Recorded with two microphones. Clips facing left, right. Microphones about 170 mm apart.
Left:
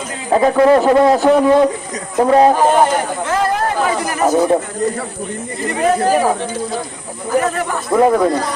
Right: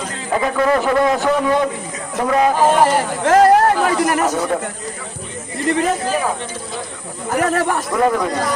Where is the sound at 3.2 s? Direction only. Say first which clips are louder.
Right 9 dB; 70° right (ahead or behind).